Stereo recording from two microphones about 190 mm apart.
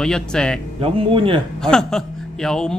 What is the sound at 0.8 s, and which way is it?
Speech, 30° right (ahead or behind).